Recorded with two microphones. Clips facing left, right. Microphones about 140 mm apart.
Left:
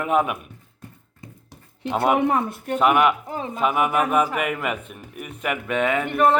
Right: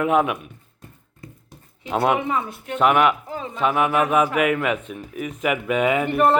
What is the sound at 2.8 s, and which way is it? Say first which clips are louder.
Speech: right 1 dB; 5° left (ahead or behind).